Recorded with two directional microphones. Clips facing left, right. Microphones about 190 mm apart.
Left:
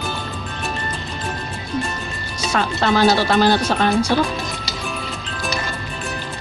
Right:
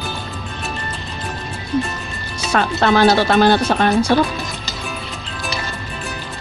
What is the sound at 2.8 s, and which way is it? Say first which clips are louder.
Speech: right 2 dB; 60° right (ahead or behind).